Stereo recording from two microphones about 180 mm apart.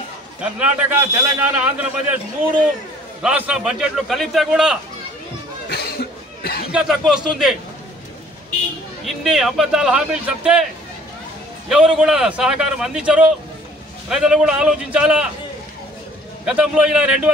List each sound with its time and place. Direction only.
0.4 s a man's voice: 5° right (ahead or behind)
3.2 s a man's voice: 5° right (ahead or behind)
5.7 s a sound: 60° left (ahead or behind)
6.7 s a man's voice: 5° right (ahead or behind)
9.0 s a man's voice: centre (ahead or behind)
11.7 s a man's voice: 5° right (ahead or behind)
16.4 s a man's voice: 5° right (ahead or behind)